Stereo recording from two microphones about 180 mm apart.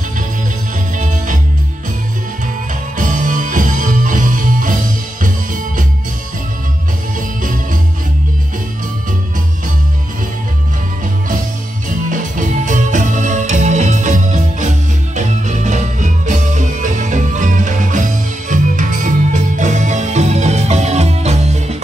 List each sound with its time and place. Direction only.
0.9 s music: 45° right (ahead or behind)
3.0 s music: 45° right (ahead or behind)
7.2 s music: 45° right (ahead or behind)
12.1 s music: 45° right (ahead or behind)